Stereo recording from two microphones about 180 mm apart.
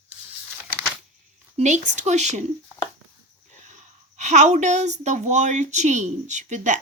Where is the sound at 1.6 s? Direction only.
40° right (ahead or behind).